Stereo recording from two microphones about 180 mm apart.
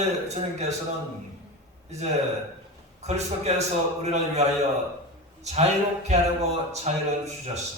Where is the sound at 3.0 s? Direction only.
40° right (ahead or behind).